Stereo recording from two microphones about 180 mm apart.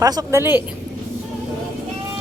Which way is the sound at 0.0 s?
20° right (ahead or behind).